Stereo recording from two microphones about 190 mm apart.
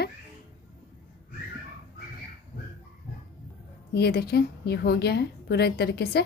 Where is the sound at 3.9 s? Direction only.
60° left (ahead or behind).